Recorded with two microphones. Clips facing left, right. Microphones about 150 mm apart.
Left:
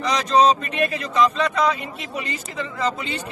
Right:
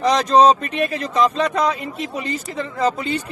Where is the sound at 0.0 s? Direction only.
40° right (ahead or behind).